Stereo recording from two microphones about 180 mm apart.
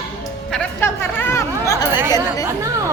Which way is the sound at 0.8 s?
15° left (ahead or behind).